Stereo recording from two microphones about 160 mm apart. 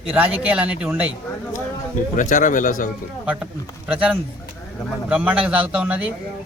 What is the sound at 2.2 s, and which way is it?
Speech, 55° left (ahead or behind).